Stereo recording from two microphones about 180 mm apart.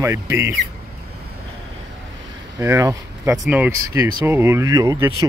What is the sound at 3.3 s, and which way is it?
Speech, 5° right (ahead or behind).